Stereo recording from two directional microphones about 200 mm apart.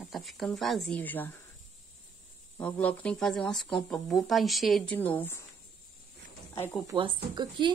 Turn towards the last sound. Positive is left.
turn(degrees=-25)  # may be behind; listen again after turning